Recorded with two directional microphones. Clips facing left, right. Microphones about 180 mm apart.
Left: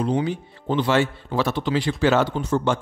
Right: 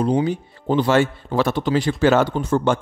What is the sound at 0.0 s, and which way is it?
Speech, 40° right (ahead or behind).